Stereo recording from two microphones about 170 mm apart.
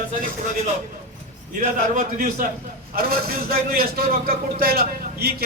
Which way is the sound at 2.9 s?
65° right (ahead or behind).